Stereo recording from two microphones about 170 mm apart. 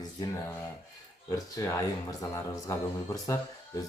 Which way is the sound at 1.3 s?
20° left (ahead or behind).